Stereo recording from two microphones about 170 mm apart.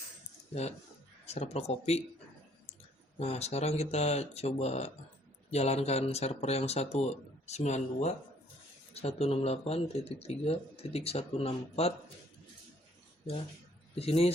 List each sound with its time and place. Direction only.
1.2 s speech: 40° left (ahead or behind)
3.2 s speech: 40° left (ahead or behind)
13.9 s speech: 35° left (ahead or behind)